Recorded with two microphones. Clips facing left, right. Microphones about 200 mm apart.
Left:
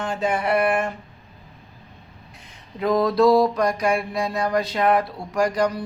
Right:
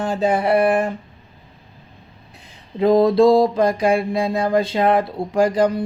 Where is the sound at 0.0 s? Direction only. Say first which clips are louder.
Right 5 dB; 35° right (ahead or behind).